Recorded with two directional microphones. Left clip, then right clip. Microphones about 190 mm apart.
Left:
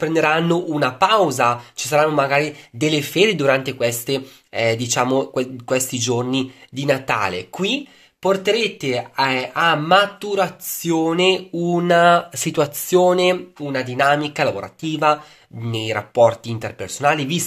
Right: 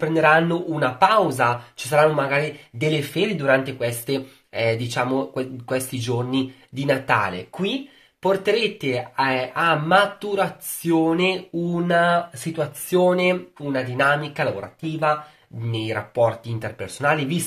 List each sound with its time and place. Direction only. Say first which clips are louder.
0.0 s speech: right 1 dB; 40° left (ahead or behind)
3.2 s speech: left 4 dB; 50° left (ahead or behind)
3.8 s speech: left 4 dB; 30° left (ahead or behind)
7.2 s speech: left 4 dB; 45° left (ahead or behind)
8.2 s speech: left 2 dB; 25° left (ahead or behind); by 12.6 s 55° left (ahead or behind)
12.9 s speech: left 3 dB; 30° left (ahead or behind)